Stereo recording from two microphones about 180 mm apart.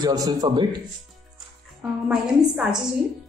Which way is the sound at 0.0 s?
20° right (ahead or behind).